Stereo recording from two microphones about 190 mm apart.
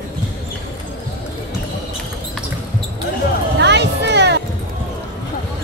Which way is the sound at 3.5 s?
65° right (ahead or behind).